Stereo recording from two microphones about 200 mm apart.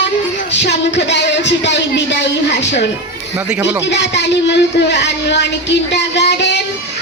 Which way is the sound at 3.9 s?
60° left (ahead or behind).